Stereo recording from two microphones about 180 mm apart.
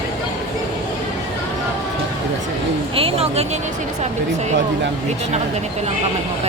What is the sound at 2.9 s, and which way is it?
Speech, 35° right (ahead or behind).